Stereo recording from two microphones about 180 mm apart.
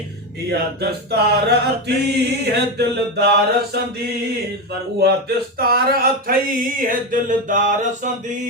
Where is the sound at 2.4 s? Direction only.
65° right (ahead or behind).